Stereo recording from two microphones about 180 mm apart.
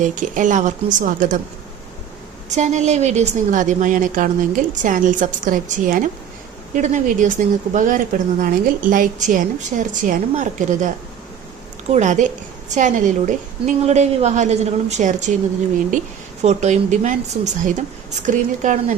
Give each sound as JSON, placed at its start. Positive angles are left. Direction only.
{"t": 0.0, "sound": "speech", "side_deg": -45}
{"t": 2.5, "sound": "a woman's voice", "side_deg": -40}
{"t": 16.4, "sound": "a woman's voice", "side_deg": -40}